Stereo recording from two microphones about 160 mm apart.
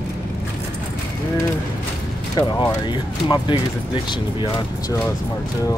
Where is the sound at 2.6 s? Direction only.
25° left (ahead or behind).